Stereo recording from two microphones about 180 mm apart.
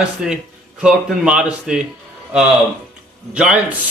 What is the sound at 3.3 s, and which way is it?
Speech, 5° right (ahead or behind).